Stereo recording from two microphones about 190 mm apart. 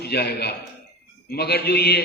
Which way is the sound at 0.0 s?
55° left (ahead or behind).